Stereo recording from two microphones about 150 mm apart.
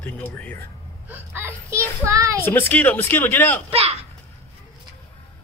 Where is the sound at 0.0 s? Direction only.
10° left (ahead or behind).